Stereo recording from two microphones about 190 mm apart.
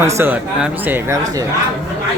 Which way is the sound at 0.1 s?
10° right (ahead or behind).